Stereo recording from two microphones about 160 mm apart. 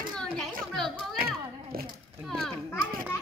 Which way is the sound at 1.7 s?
65° right (ahead or behind).